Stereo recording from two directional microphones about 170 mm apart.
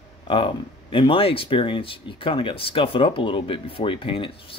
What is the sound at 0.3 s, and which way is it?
Speech, 30° left (ahead or behind).